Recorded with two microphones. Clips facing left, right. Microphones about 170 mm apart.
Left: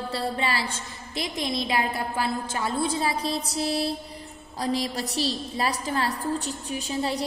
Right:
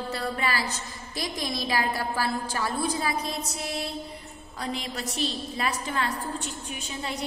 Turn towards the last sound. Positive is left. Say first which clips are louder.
# left 7 dB
turn(degrees=35)  # may be behind; listen again after turning